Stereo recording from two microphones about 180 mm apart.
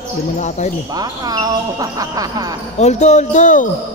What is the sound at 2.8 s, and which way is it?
Speech, 40° left (ahead or behind).